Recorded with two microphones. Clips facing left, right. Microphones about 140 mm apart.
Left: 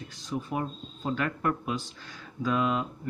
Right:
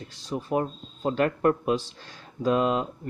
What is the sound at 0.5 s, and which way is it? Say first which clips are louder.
Speech: right 5 dB; 45° right (ahead or behind).